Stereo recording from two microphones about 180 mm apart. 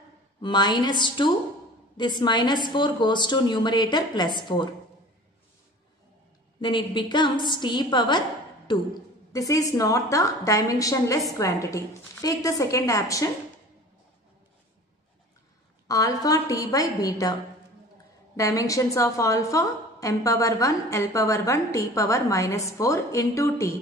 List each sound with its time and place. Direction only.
0.4 s a woman's voice: 25° left (ahead or behind)
6.6 s a woman's voice: 25° left (ahead or behind)
15.9 s a woman's voice: 20° left (ahead or behind)